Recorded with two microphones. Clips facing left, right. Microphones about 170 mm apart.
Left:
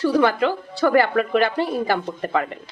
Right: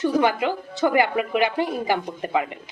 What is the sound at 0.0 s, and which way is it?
A woman's voice, 15° right (ahead or behind).